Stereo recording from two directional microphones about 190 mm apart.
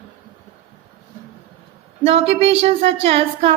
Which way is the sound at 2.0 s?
30° right (ahead or behind).